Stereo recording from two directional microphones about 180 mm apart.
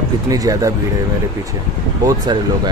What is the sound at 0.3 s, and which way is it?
Speech, 20° right (ahead or behind).